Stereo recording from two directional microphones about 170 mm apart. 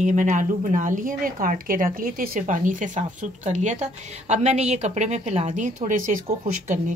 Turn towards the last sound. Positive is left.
turn(degrees=-50)  # may be behind; listen again after turning